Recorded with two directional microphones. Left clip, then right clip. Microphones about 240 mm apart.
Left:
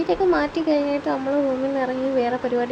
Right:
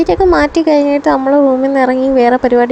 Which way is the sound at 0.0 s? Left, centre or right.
Right.